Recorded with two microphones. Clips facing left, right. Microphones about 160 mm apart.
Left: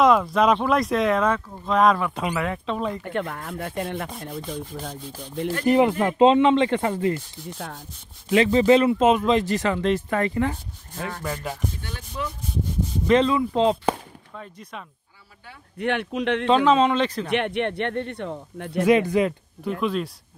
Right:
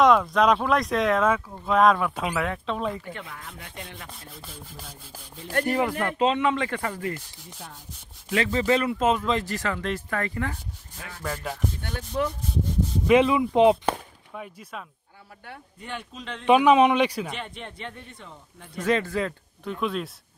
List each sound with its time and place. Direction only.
0.0 s speech: centre (ahead or behind)
3.0 s speech: 60° left (ahead or behind)
5.7 s speech: 20° left (ahead or behind)
7.5 s a man's voice: 70° left (ahead or behind)
8.3 s speech: 20° left (ahead or behind)
11.0 s speech: 60° left (ahead or behind)
11.2 s speech: centre (ahead or behind)
11.8 s speech: 55° right (ahead or behind)
13.0 s speech: 10° right (ahead or behind)
15.8 s a man's voice: 70° left (ahead or behind)
16.4 s speech: 15° right (ahead or behind)
17.3 s a man's voice: 70° left (ahead or behind)
18.8 s speech: 15° left (ahead or behind)
19.6 s speech: centre (ahead or behind)